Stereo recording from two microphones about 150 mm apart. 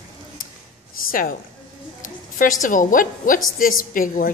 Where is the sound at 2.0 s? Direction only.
60° left (ahead or behind).